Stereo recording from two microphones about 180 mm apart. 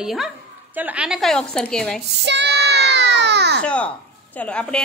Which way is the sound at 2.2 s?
70° right (ahead or behind).